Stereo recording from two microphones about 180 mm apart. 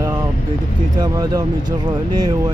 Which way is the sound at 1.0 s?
20° right (ahead or behind).